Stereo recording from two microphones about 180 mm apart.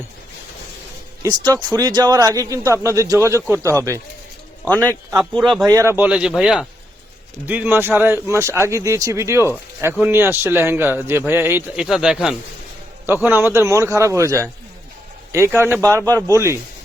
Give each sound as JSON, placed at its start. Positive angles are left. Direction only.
{"t": 1.2, "sound": "a man's voice", "side_deg": -25}
{"t": 5.1, "sound": "speech", "side_deg": 0}
{"t": 5.6, "sound": "speech", "side_deg": -15}